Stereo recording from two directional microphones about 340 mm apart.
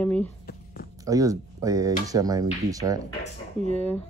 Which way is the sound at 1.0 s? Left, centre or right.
Centre.